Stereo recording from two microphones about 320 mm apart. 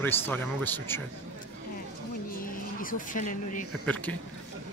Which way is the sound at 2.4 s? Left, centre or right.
Left.